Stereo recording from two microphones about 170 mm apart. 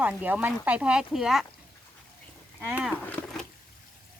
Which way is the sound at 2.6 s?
10° right (ahead or behind).